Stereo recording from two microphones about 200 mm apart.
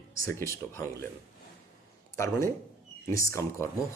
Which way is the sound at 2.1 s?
15° left (ahead or behind).